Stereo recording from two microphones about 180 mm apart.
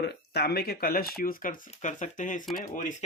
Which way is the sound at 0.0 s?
65° left (ahead or behind).